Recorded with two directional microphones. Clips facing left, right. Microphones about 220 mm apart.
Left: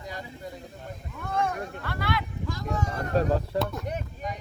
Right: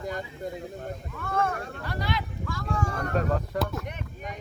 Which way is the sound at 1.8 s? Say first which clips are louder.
Even; 20° right (ahead or behind).